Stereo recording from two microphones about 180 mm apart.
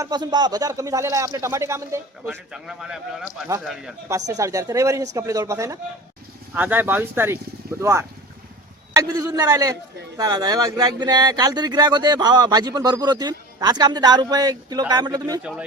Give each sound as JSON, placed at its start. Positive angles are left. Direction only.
{"t": 0.0, "sound": "speech", "side_deg": -25}
{"t": 2.2, "sound": "a man's voice", "side_deg": -5}
{"t": 4.3, "sound": "speech", "side_deg": -20}